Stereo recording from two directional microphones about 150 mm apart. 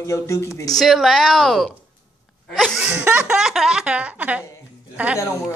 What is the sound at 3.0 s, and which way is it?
Speech, 10° right (ahead or behind).